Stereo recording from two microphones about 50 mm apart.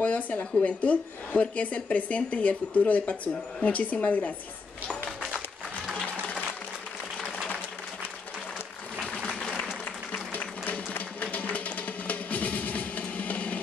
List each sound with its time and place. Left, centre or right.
0.0 s speech: left
5.9 s music: left
10.1 s applause: left
10.6 s music: left